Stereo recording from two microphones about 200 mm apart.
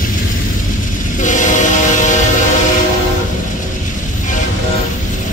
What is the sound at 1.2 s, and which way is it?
Train, 40° left (ahead or behind).